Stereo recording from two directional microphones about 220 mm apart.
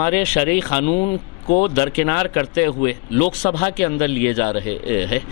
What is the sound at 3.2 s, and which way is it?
Speech, 35° left (ahead or behind).